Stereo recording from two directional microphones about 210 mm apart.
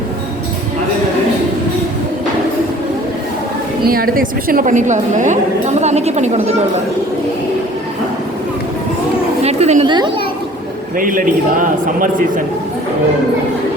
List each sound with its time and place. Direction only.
3.8 s a woman's voice: 45° right (ahead or behind)
9.4 s chatter: 30° right (ahead or behind)
10.9 s a woman's voice: 40° right (ahead or behind)